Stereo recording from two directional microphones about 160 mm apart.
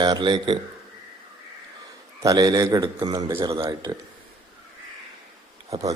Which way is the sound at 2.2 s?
20° right (ahead or behind).